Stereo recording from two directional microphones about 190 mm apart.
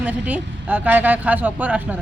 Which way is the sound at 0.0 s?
10° right (ahead or behind).